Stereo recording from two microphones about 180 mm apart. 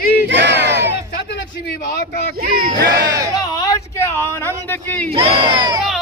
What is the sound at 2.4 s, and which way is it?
Speech, 55° right (ahead or behind).